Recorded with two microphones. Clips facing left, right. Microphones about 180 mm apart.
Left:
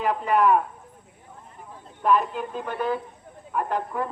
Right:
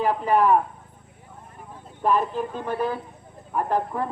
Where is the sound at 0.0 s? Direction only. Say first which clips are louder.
Right 1 dB; 35° right (ahead or behind).